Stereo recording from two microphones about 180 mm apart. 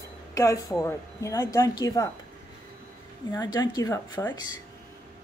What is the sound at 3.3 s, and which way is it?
Speech, 20° left (ahead or behind).